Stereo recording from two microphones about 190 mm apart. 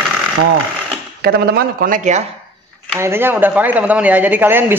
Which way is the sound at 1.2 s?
55° right (ahead or behind).